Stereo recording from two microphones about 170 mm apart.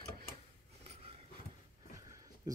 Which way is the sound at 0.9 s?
35° right (ahead or behind).